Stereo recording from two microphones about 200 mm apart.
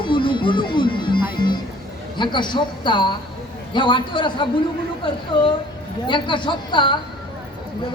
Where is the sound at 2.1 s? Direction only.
25° left (ahead or behind).